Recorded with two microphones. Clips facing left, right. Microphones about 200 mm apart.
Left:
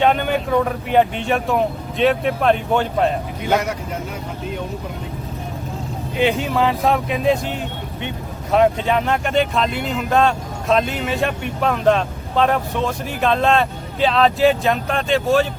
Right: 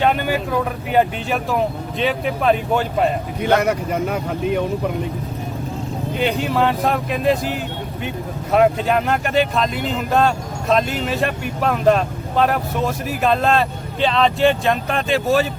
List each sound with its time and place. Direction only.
0.0 s speech: 5° right (ahead or behind)
3.6 s speech: 60° right (ahead or behind)
6.1 s speech: centre (ahead or behind)